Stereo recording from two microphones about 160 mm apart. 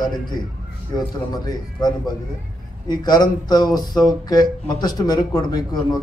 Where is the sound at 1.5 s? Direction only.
25° left (ahead or behind).